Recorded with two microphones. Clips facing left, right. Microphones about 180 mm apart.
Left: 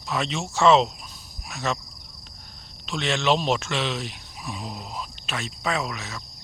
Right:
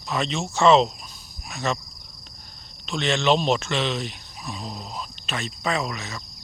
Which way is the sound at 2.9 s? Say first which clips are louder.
Right 2 dB; 5° left (ahead or behind).